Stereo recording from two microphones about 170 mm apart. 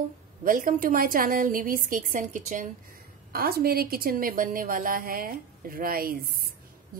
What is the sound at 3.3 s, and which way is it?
A woman's voice, 60° right (ahead or behind).